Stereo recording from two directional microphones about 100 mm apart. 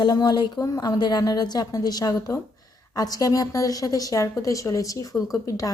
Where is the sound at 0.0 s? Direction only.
45° left (ahead or behind).